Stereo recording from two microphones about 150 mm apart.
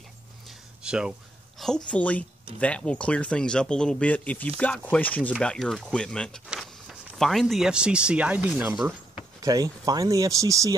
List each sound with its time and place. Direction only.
0.8 s speech: 5° right (ahead or behind)
1.9 s speech: 10° left (ahead or behind); by 8.7 s 10° right (ahead or behind)
9.4 s speech: 25° right (ahead or behind)